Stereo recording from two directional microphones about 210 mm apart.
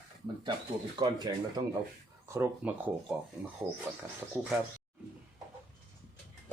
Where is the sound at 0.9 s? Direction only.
20° right (ahead or behind).